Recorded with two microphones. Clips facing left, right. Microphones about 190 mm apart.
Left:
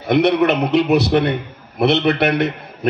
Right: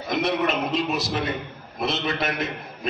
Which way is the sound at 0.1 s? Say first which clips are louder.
Left 9 dB; 65° left (ahead or behind).